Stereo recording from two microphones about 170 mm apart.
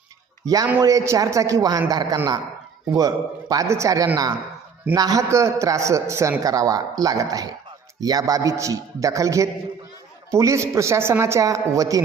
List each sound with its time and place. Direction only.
0.4 s a man's voice: 20° right (ahead or behind)
3.5 s a man's voice: 20° right (ahead or behind)